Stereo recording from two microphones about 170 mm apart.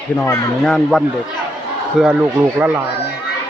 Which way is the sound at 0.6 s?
Centre (ahead or behind).